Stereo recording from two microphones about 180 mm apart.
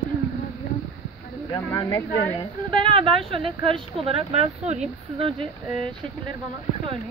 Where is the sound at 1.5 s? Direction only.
20° left (ahead or behind).